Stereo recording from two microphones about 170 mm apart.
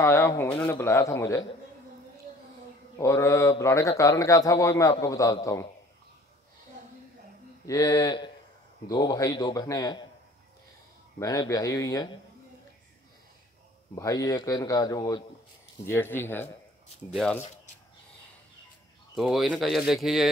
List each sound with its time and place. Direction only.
0.0 s a man's voice: 15° left (ahead or behind)
3.0 s a man's voice: 15° left (ahead or behind)
7.6 s speech: 20° left (ahead or behind)
11.1 s speech: 20° left (ahead or behind)
13.9 s a man's voice: 20° left (ahead or behind)
17.1 s speech: centre (ahead or behind)
19.1 s speech: centre (ahead or behind)